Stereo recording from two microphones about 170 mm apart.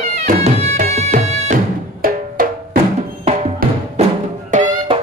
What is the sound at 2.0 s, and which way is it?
Music, 60° right (ahead or behind).